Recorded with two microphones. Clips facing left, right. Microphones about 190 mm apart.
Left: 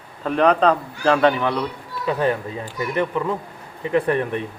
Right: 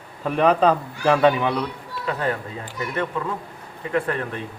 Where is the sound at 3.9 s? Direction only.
20° left (ahead or behind).